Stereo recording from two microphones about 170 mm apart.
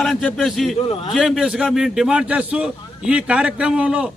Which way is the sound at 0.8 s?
30° left (ahead or behind).